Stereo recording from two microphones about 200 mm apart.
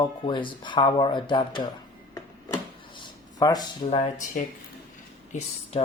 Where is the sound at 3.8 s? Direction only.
35° left (ahead or behind).